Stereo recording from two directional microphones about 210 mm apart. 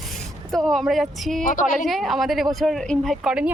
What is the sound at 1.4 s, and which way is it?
Speech, 40° left (ahead or behind).